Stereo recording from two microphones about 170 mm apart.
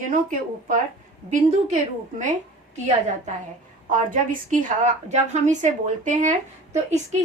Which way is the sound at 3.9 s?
50° right (ahead or behind).